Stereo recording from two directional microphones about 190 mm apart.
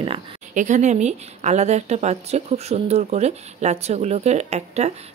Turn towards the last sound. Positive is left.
turn(degrees=-35)  # may be behind; listen again after turning